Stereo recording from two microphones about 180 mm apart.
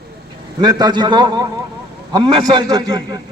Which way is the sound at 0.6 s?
25° right (ahead or behind).